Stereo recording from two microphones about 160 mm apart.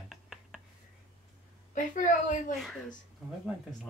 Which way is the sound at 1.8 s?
55° left (ahead or behind).